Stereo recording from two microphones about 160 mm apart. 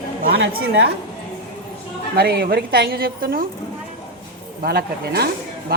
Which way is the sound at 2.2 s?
80° right.